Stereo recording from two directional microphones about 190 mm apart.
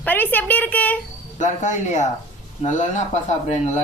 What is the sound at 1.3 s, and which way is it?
Speech, 40° left (ahead or behind).